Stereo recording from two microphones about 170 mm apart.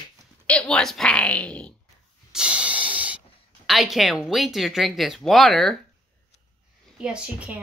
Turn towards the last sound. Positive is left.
turn(degrees=-5)  # may be behind; listen again after turning